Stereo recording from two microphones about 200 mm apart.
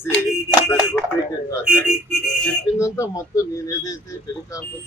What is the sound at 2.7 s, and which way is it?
A man's voice, 15° left (ahead or behind).